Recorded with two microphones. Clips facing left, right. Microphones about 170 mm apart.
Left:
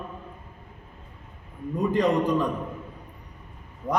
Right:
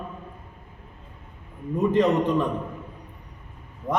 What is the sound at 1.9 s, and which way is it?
Speech, centre (ahead or behind).